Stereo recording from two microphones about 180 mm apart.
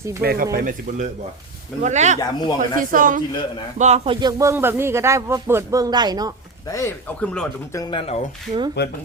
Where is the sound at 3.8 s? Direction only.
40° right (ahead or behind).